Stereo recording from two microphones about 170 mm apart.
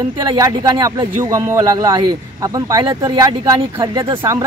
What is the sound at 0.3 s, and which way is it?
Speech, 25° right (ahead or behind).